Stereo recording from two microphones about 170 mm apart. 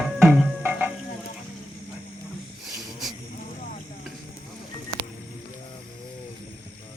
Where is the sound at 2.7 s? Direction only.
Centre (ahead or behind).